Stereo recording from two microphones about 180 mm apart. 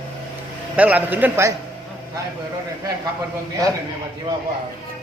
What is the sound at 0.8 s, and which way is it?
Speech, 10° right (ahead or behind).